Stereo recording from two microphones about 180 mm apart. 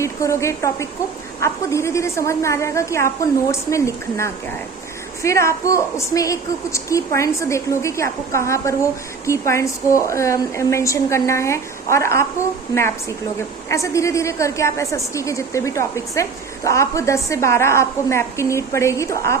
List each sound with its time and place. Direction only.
0.0 s a woman's voice: 15° left (ahead or behind)